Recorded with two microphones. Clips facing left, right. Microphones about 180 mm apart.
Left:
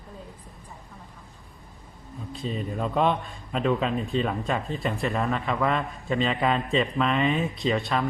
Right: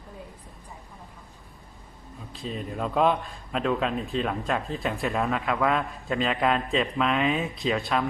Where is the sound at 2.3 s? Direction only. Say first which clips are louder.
Left 2 dB; centre (ahead or behind).